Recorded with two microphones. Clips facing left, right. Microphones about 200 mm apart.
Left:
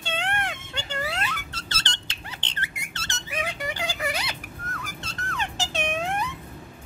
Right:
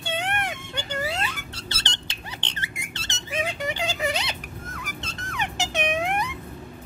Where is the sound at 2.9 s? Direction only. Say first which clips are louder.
Right 3 dB; 20° right (ahead or behind).